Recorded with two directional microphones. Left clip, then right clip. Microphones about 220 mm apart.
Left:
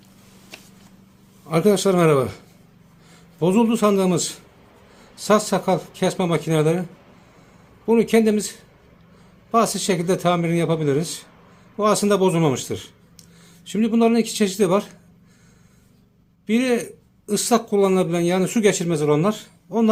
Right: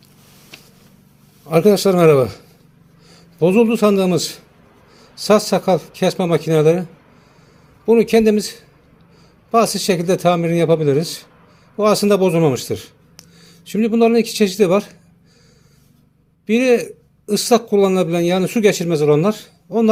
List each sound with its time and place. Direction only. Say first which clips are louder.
1.5 s speech: right 5 dB; 20° right (ahead or behind)
3.4 s speech: right 5 dB; 15° right (ahead or behind)
5.5 s speech: right 5 dB; 20° right (ahead or behind)
7.9 s speech: right 5 dB; 20° right (ahead or behind)
16.5 s speech: right 6 dB; 15° right (ahead or behind)